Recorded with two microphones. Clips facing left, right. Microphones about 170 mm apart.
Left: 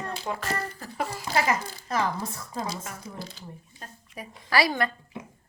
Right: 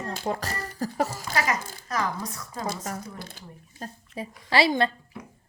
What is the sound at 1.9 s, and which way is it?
Speech, 25° left (ahead or behind).